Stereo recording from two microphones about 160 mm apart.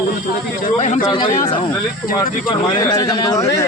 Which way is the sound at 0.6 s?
50° left (ahead or behind).